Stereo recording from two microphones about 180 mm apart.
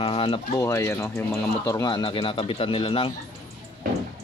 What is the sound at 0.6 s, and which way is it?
Speech, 15° left (ahead or behind).